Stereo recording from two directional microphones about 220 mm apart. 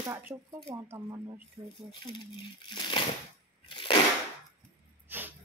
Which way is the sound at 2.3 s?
20° left (ahead or behind).